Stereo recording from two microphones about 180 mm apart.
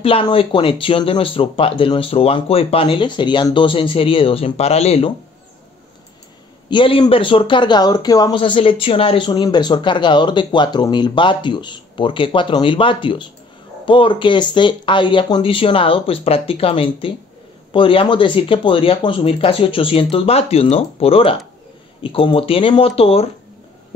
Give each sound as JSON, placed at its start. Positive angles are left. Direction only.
{"t": 0.0, "sound": "speech", "side_deg": 30}
{"t": 6.7, "sound": "speech", "side_deg": 25}